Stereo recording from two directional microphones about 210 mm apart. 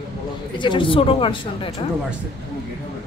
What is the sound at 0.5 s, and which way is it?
A woman's voice, 20° left (ahead or behind).